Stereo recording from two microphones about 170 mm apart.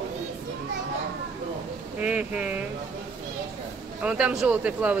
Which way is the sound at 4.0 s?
5° right (ahead or behind).